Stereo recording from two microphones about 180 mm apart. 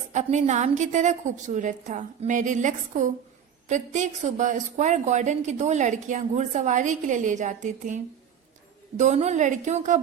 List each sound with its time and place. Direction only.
0.1 s a woman's voice: 40° right (ahead or behind)